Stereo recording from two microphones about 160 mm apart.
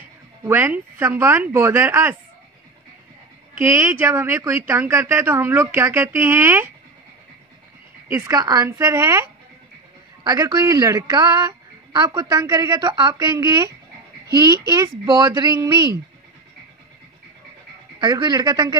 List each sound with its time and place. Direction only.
0.4 s speech: 15° right (ahead or behind)
3.6 s speech: 15° right (ahead or behind)
8.1 s a woman's voice: 20° right (ahead or behind)
10.2 s a woman's voice: 20° right (ahead or behind)
17.9 s a woman's voice: 25° right (ahead or behind)